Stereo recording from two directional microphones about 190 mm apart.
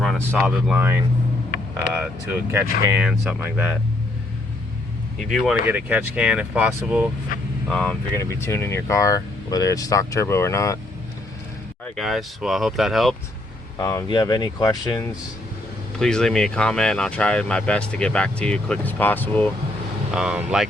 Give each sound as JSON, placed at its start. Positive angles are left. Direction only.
{"t": 0.0, "sound": "speech", "side_deg": 0}
{"t": 5.3, "sound": "speech", "side_deg": 0}
{"t": 7.3, "sound": "speech", "side_deg": 45}
{"t": 7.7, "sound": "speech", "side_deg": 5}
{"t": 11.9, "sound": "speech", "side_deg": 0}
{"t": 13.7, "sound": "speech", "side_deg": 15}
{"t": 16.0, "sound": "speech", "side_deg": 5}
{"t": 20.1, "sound": "speech", "side_deg": -5}